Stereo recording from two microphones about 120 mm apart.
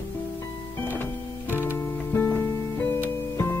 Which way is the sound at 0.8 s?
15° left (ahead or behind).